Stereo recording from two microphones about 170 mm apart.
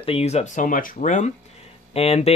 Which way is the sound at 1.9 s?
35° left (ahead or behind).